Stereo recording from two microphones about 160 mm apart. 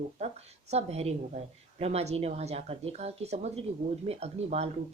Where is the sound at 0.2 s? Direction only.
40° right (ahead or behind).